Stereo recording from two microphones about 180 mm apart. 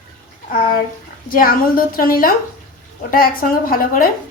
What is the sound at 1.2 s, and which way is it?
Speech, 50° left (ahead or behind).